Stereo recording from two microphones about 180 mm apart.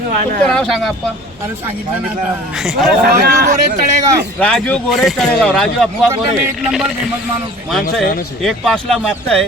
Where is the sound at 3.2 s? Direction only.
55° right (ahead or behind).